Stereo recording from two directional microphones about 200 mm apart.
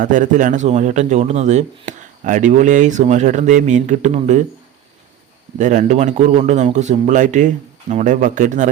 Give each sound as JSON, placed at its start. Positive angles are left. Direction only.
{"t": 0.0, "sound": "speech", "side_deg": -40}
{"t": 5.5, "sound": "speech", "side_deg": -35}